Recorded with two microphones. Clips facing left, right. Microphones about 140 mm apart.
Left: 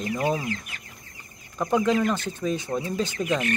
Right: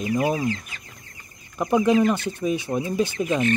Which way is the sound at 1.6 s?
10° right (ahead or behind).